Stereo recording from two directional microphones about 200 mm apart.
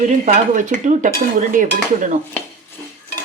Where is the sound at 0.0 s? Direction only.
35° right (ahead or behind).